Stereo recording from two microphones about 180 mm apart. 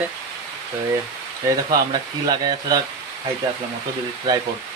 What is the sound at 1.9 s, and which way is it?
Speech, 20° right (ahead or behind).